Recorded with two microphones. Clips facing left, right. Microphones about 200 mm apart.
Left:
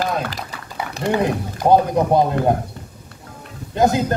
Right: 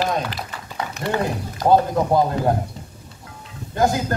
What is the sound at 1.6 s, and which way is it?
Speech, 15° left (ahead or behind).